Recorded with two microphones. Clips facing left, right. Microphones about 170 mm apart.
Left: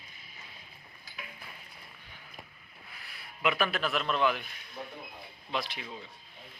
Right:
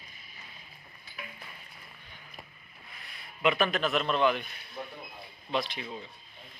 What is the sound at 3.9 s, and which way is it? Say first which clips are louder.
Speech: right 2 dB; centre (ahead or behind).